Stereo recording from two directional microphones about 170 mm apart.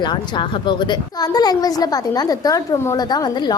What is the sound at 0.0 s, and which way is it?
A woman's voice, 25° left (ahead or behind).